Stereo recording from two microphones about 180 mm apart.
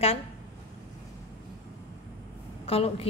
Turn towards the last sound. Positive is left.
turn(degrees=35)  # may be behind; listen again after turning